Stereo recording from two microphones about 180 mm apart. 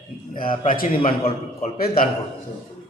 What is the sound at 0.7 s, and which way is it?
Speech, 50° left (ahead or behind).